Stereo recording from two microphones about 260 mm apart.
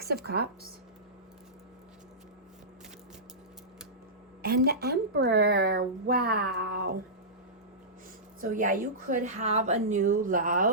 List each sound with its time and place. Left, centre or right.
0.0 s speech: right
4.4 s speech: right
8.4 s a woman's voice: right